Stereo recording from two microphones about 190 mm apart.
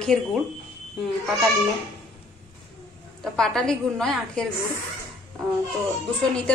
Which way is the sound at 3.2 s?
Centre (ahead or behind).